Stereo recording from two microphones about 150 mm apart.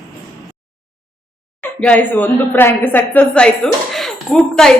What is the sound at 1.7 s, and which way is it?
A woman's voice, 10° left (ahead or behind).